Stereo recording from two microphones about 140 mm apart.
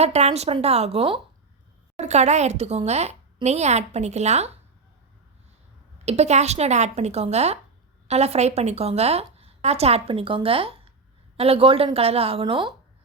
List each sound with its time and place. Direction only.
0.0 s a woman's voice: 50° right (ahead or behind)
2.0 s a woman's voice: 55° right (ahead or behind)
6.1 s a woman's voice: 50° right (ahead or behind); by 12.7 s 35° right (ahead or behind)